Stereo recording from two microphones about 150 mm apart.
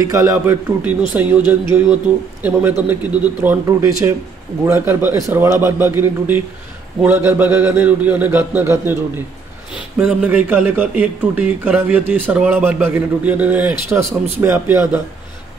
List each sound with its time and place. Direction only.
0.0 s a man's voice: 20° right (ahead or behind)
10.0 s a man's voice: 10° right (ahead or behind)